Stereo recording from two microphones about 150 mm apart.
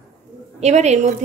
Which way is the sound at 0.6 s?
50° right (ahead or behind).